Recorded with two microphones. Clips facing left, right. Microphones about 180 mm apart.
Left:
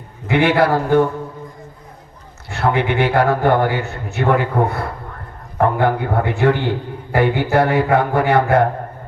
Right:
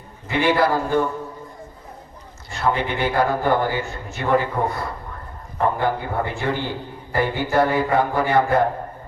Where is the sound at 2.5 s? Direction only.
65° left (ahead or behind).